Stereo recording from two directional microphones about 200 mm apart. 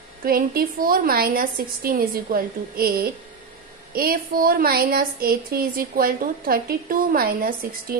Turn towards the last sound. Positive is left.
turn(degrees=-45)  # may be behind; listen again after turning